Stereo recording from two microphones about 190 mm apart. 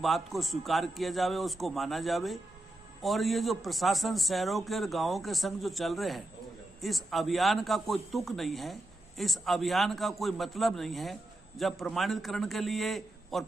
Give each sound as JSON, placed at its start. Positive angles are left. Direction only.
{"t": 0.0, "sound": "a man's voice", "side_deg": 0}